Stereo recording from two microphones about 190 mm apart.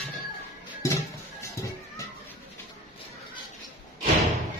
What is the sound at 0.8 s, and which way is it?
Music, 15° left (ahead or behind).